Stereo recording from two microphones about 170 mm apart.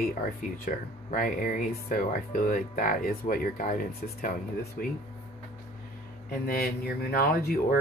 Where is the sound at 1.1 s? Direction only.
55° left (ahead or behind).